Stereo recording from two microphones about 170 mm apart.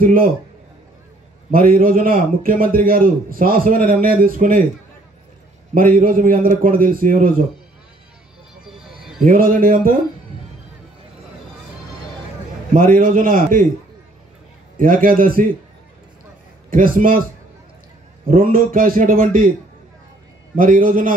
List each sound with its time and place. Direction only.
0.0 s a man's voice: 55° right (ahead or behind)
1.5 s a man's voice: 55° right (ahead or behind)
5.8 s a man's voice: 55° right (ahead or behind)
8.6 s music: centre (ahead or behind)
9.2 s a man's voice: 55° right (ahead or behind)
12.7 s a man's voice: 55° right (ahead or behind)
14.8 s a man's voice: 55° right (ahead or behind)
16.7 s a man's voice: 55° right (ahead or behind)
18.2 s a man's voice: 55° right (ahead or behind)
20.5 s a man's voice: 55° right (ahead or behind)